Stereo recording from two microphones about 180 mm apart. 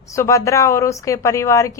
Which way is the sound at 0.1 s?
15° left (ahead or behind).